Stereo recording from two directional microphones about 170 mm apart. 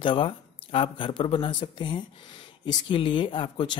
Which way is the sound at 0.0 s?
30° left (ahead or behind).